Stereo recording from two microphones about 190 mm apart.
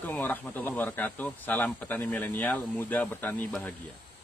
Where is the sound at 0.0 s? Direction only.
10° left (ahead or behind).